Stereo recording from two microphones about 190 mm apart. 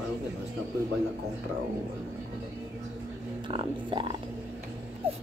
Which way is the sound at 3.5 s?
25° right (ahead or behind).